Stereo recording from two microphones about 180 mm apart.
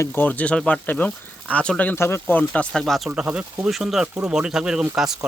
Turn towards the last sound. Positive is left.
turn(degrees=-5)  # may be behind; listen again after turning